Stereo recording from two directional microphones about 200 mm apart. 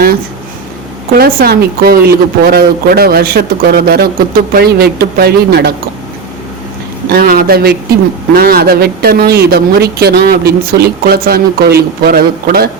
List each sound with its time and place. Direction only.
1.2 s a man's voice: 50° right (ahead or behind)
7.1 s a man's voice: 50° right (ahead or behind)